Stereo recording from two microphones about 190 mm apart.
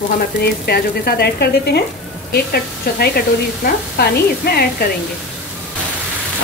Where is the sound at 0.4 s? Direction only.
55° left (ahead or behind).